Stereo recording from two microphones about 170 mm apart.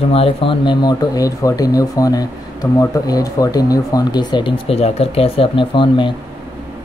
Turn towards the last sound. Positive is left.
turn(degrees=30)  # may be behind; listen again after turning